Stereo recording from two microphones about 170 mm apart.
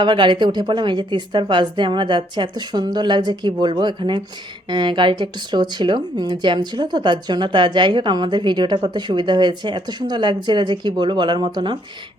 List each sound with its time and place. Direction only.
0.0 s speech: 25° right (ahead or behind)